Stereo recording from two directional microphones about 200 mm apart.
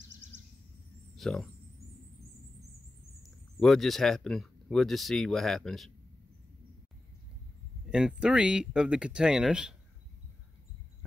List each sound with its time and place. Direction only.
0.1 s a sound: 65° right (ahead or behind)
1.1 s speech: centre (ahead or behind)
3.5 s speech: centre (ahead or behind)
7.9 s speech: 5° right (ahead or behind)